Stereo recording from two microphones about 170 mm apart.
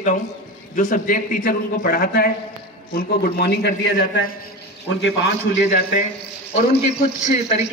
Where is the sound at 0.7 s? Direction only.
50° left (ahead or behind); by 5.7 s 90° left.